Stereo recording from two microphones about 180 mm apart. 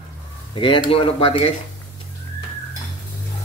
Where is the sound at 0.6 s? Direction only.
25° left (ahead or behind).